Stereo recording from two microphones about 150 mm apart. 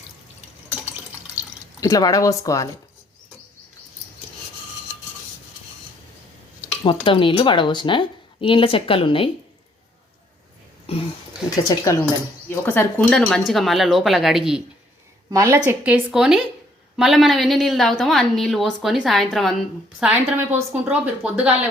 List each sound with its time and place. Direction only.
1.8 s speech: 25° left (ahead or behind)
6.8 s speech: 35° left (ahead or behind)
10.9 s speech: 40° left (ahead or behind)
11.5 s speech: 25° left (ahead or behind)
12.5 s a woman's voice: 15° left (ahead or behind); by 14.6 s 5° right (ahead or behind)
15.3 s a woman's voice: 20° right (ahead or behind)
15.8 s a woman's voice: 10° right (ahead or behind)
20.0 s a woman's voice: 10° right (ahead or behind)